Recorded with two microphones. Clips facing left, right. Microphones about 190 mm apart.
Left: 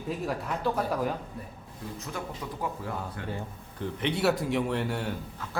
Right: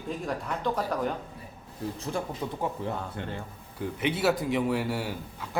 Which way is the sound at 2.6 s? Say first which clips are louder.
Right 1 dB; 25° right (ahead or behind).